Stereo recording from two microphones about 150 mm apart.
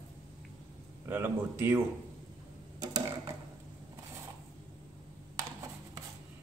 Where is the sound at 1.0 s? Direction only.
15° right (ahead or behind).